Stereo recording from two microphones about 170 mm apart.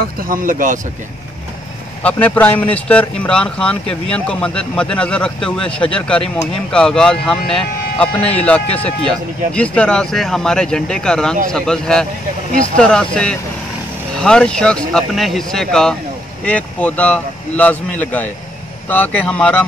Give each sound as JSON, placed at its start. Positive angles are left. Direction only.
{"t": 0.0, "sound": "speech", "side_deg": -55}
{"t": 2.0, "sound": "speech", "side_deg": 10}